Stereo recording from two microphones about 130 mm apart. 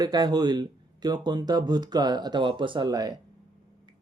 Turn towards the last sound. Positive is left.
turn(degrees=-30)  # may be behind; listen again after turning